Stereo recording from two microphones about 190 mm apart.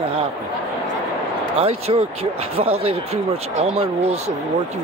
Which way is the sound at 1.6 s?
35° right (ahead or behind).